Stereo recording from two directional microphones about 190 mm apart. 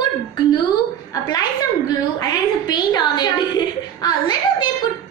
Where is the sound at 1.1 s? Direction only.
20° left (ahead or behind).